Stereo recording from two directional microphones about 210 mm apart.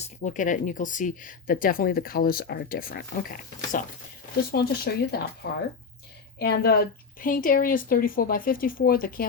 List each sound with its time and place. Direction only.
0.0 s a woman's voice: 35° left (ahead or behind)